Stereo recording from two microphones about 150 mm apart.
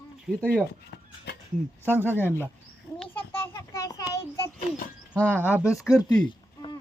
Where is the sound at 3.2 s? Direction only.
15° left (ahead or behind).